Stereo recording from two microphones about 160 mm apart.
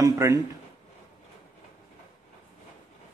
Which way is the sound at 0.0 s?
20° right (ahead or behind).